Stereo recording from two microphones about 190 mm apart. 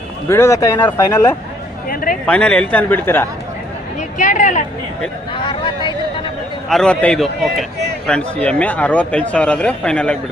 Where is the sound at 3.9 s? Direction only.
40° left (ahead or behind).